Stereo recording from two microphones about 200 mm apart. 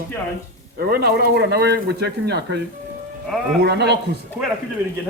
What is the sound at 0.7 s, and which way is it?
Speech, 50° right (ahead or behind).